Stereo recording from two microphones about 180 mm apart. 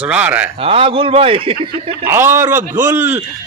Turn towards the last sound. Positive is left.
turn(degrees=-10)  # may be behind; listen again after turning